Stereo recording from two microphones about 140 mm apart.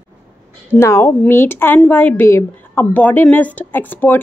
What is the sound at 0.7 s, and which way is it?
A woman's voice, 20° left (ahead or behind).